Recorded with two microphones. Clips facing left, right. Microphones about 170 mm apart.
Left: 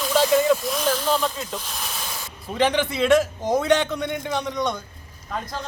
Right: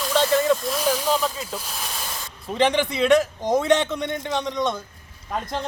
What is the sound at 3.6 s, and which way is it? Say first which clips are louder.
Speech: even; centre (ahead or behind).